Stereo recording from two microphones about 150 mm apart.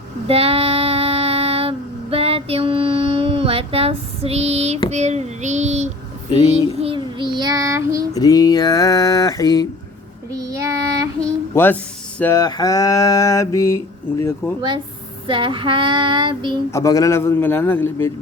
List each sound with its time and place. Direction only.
0.3 s female singing: 40° right (ahead or behind)
4.9 s child singing: 50° right (ahead or behind)
6.8 s child singing: 35° right (ahead or behind)
8.1 s mantra: 25° left (ahead or behind)
10.3 s child singing: 20° right (ahead or behind)
11.5 s a man's voice: 15° left (ahead or behind)
12.2 s mantra: 20° left (ahead or behind)
15.3 s child singing: 35° right (ahead or behind)
16.7 s a man's voice: 20° left (ahead or behind)